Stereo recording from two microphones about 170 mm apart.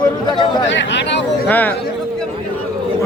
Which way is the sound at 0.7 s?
90° left.